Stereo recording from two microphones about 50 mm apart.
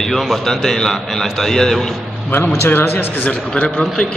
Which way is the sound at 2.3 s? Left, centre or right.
Left.